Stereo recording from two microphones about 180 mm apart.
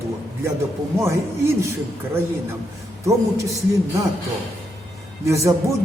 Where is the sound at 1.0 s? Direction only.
15° right (ahead or behind).